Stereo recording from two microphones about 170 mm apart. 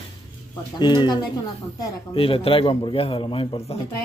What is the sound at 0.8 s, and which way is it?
Speech, 25° left (ahead or behind).